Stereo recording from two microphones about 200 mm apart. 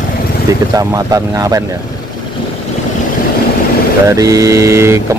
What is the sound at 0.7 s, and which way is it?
Speech, 15° right (ahead or behind).